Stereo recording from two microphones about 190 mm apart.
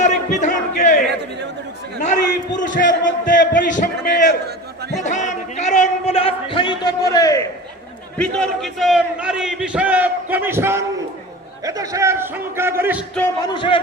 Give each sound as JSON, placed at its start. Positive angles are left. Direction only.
{"t": 0.0, "sound": "crowd", "side_deg": 40}
{"t": 1.0, "sound": "a man's voice", "side_deg": -65}
{"t": 2.6, "sound": "a man's voice", "side_deg": 45}
{"t": 5.0, "sound": "a sound", "side_deg": 40}
{"t": 8.2, "sound": "a man's voice", "side_deg": 0}
{"t": 13.4, "sound": "speech", "side_deg": 25}